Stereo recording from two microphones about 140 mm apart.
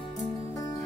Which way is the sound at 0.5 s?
25° left (ahead or behind).